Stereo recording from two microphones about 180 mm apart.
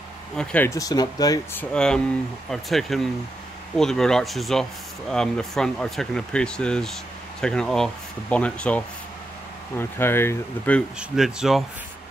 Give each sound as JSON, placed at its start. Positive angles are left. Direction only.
{"t": 0.4, "sound": "speech", "side_deg": 5}
{"t": 0.7, "sound": "speech", "side_deg": 20}
{"t": 11.0, "sound": "speech", "side_deg": -5}